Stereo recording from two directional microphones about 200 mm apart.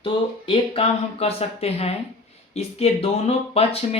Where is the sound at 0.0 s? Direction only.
25° left (ahead or behind).